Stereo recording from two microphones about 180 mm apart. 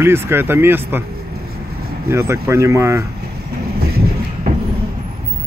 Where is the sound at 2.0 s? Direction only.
15° right (ahead or behind).